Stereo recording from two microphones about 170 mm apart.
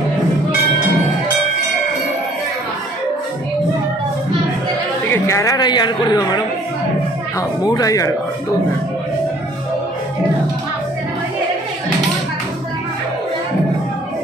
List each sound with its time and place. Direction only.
5.1 s a woman's voice: 15° left (ahead or behind)
7.6 s speech: 20° left (ahead or behind)